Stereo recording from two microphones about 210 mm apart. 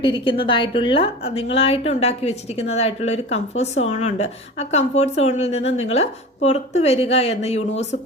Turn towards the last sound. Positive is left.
turn(degrees=30)  # may be behind; listen again after turning